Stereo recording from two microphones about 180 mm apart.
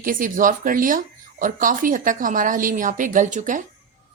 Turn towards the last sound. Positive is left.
turn(degrees=-45)  # may be behind; listen again after turning